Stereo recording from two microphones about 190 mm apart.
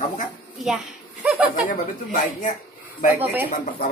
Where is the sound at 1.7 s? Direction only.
40° left (ahead or behind).